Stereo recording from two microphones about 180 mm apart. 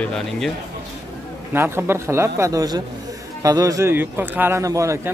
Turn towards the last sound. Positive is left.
turn(degrees=-15)  # may be behind; listen again after turning